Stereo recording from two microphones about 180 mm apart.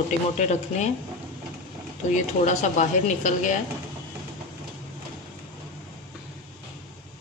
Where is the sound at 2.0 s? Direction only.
45° left (ahead or behind).